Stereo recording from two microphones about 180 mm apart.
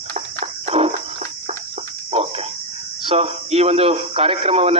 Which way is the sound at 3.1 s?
35° right (ahead or behind).